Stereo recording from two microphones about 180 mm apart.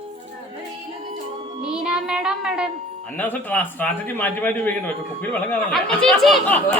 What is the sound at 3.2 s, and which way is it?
A man's voice, 10° left (ahead or behind).